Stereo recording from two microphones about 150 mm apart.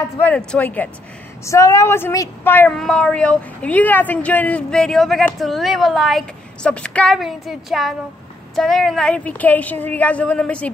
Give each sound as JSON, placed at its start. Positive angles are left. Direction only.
{"t": 0.2, "sound": "a woman's voice", "side_deg": 10}
{"t": 1.4, "sound": "a woman's voice", "side_deg": 20}